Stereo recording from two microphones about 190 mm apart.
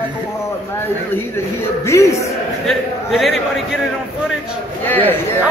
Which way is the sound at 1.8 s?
15° left (ahead or behind).